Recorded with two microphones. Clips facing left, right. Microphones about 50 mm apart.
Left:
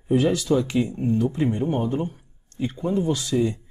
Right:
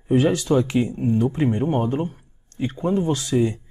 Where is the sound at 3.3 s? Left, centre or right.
Centre.